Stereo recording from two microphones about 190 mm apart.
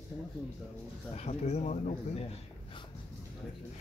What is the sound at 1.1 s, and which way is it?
Speech, 35° left (ahead or behind).